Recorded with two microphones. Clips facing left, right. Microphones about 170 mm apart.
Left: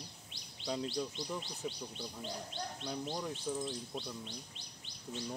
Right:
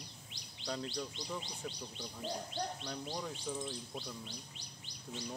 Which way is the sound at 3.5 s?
5° left (ahead or behind).